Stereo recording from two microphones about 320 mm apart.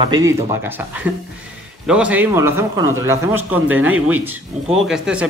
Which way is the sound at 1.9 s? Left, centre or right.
Centre.